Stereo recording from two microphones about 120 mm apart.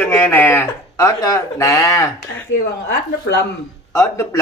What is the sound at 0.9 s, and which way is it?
A man's voice, 30° left (ahead or behind).